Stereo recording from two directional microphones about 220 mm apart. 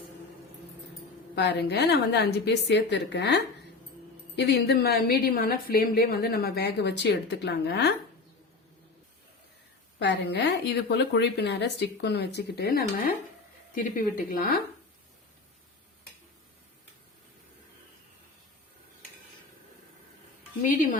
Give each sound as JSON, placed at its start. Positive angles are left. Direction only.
{"t": 1.4, "sound": "a woman's voice", "side_deg": 50}
{"t": 10.0, "sound": "a woman's voice", "side_deg": 50}